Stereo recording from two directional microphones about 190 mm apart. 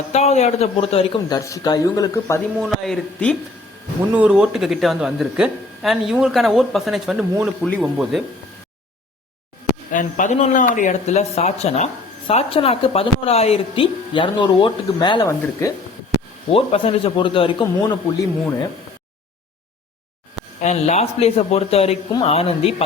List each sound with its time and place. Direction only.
0.1 s speech: 35° left (ahead or behind)
1.3 s speech: 15° left (ahead or behind)
2.6 s speech: centre (ahead or behind)
4.1 s speech: 5° right (ahead or behind)
9.9 s speech: 40° left (ahead or behind); by 15.7 s 20° left (ahead or behind)
16.1 s a sound: 75° right (ahead or behind)
16.6 s speech: 30° left (ahead or behind)
20.6 s speech: 35° left (ahead or behind)